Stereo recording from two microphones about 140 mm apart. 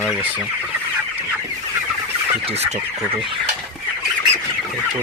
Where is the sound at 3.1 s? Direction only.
40° right (ahead or behind).